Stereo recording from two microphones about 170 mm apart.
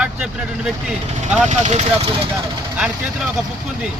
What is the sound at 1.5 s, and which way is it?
Speech, 45° right (ahead or behind).